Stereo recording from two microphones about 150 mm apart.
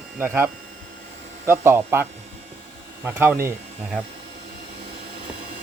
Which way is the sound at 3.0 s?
15° right (ahead or behind).